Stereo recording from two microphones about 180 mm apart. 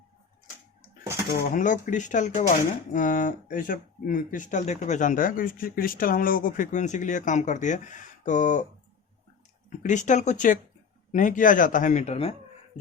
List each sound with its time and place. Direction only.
1.5 s speech: 45° left (ahead or behind)
9.6 s speech: 45° left (ahead or behind)